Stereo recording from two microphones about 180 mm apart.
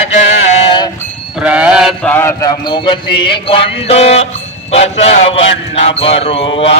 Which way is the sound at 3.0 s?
60° left (ahead or behind).